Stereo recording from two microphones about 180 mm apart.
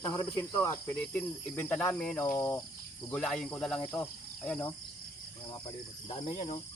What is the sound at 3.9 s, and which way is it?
Cricket, 5° left (ahead or behind).